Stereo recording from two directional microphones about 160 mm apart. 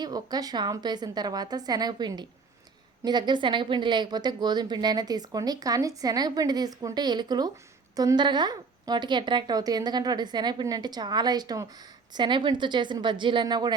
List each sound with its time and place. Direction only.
0.0 s a woman's voice: 25° right (ahead or behind)